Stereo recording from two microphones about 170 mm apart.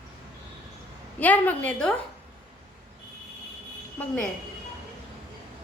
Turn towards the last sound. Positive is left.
turn(degrees=10)  # may be behind; listen again after turning